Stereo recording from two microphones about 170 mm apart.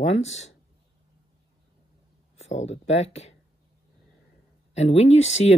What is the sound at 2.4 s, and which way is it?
Speech, 40° left (ahead or behind).